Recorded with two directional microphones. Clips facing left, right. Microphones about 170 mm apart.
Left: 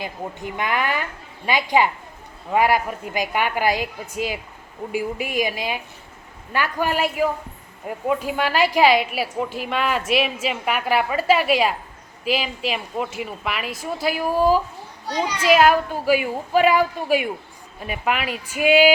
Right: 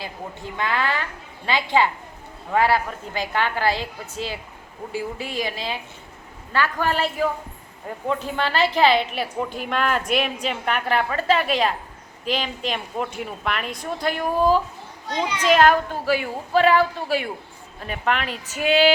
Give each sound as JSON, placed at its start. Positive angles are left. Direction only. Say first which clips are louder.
{"t": 0.0, "sound": "a woman's voice", "louder": "left 3 dB", "side_deg": 15}